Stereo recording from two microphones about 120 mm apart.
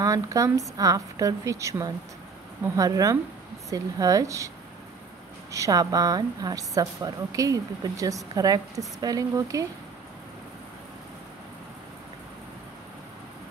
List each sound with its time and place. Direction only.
0.0 s a woman's voice: 30° right (ahead or behind)
5.5 s a woman's voice: 30° right (ahead or behind)